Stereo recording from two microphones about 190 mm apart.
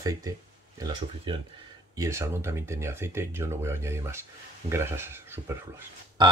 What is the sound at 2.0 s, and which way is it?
Speech, 15° right (ahead or behind).